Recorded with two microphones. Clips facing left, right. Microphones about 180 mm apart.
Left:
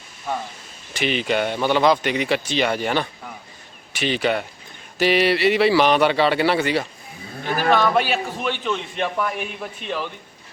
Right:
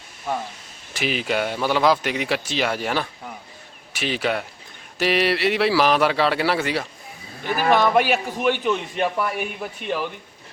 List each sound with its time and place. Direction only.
0.9 s speech: centre (ahead or behind)
7.4 s speech: 50° left (ahead or behind)
7.7 s a man's voice: 15° right (ahead or behind)